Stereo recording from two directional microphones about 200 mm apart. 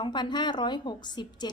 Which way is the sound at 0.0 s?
20° left (ahead or behind).